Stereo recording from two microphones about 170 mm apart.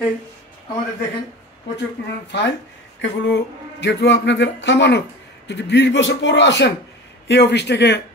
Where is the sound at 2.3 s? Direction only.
90° left.